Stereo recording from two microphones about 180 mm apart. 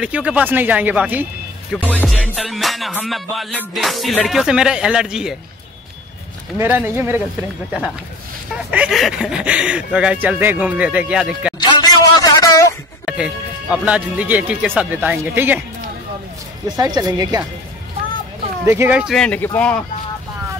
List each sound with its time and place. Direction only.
0.0 s speech: 5° right (ahead or behind)
1.8 s music: 10° left (ahead or behind)
6.6 s speech: 10° right (ahead or behind)
8.6 s speech: 5° right (ahead or behind)
11.6 s a sound: 20° left (ahead or behind)
13.0 s speech: 5° right (ahead or behind)
16.7 s speech: 20° right (ahead or behind)
18.7 s music: 10° right (ahead or behind); by 19.8 s 10° left (ahead or behind)